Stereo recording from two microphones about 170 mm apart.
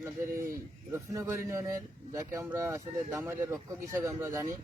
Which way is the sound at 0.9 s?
15° right (ahead or behind).